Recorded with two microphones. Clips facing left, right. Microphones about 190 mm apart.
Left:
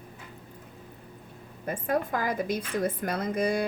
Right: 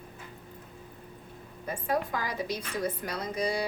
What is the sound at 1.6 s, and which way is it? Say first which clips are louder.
A woman's voice: left 2 dB; 50° left (ahead or behind).